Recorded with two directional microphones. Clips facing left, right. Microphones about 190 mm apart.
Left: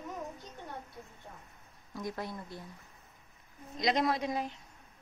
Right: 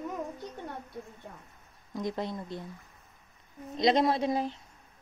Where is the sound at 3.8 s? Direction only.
30° right (ahead or behind).